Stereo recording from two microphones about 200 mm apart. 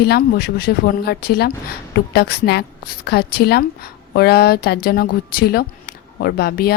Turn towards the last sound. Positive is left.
turn(degrees=50)  # may be behind; listen again after turning